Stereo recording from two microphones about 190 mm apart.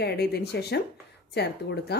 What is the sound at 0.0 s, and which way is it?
A woman's voice, 60° left (ahead or behind).